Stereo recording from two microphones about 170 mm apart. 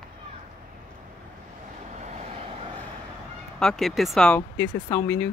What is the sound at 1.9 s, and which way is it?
Vehicle, 40° right (ahead or behind).